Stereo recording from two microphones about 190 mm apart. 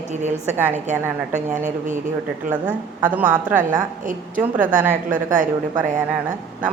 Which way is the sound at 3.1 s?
10° right (ahead or behind).